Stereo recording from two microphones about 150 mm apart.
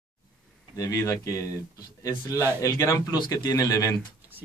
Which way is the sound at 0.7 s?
20° left (ahead or behind).